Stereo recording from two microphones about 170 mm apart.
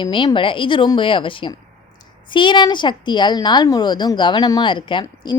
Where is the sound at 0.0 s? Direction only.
30° left (ahead or behind).